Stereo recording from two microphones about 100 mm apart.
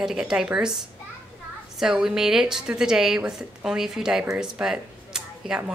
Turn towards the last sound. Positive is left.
turn(degrees=-5)  # may be behind; listen again after turning